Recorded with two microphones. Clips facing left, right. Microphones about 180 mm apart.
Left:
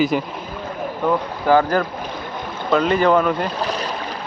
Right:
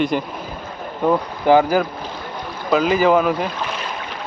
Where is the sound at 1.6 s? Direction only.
5° right (ahead or behind).